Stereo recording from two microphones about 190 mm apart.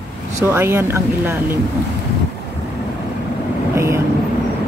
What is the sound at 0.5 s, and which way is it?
Speech, 10° right (ahead or behind).